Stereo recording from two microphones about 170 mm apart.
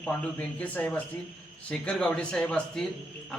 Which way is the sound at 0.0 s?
10° left (ahead or behind).